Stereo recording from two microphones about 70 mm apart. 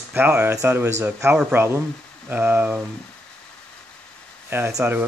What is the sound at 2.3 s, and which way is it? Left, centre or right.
Speech, right.